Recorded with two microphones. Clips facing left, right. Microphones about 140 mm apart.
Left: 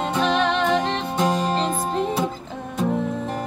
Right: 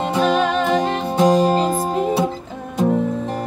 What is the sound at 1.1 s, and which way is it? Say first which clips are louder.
Music: right 8 dB; 25° right (ahead or behind).